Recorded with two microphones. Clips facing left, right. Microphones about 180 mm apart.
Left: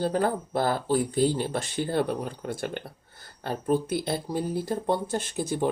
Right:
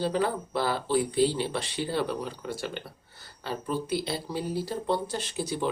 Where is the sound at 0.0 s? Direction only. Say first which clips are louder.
Left 2 dB; 50° left (ahead or behind).